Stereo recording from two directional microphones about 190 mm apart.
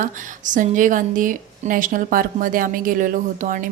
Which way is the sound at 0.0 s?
40° right (ahead or behind).